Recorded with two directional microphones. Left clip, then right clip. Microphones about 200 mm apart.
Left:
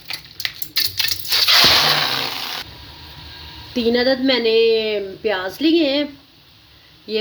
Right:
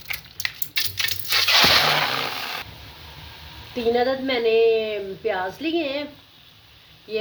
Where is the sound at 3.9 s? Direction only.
45° left (ahead or behind).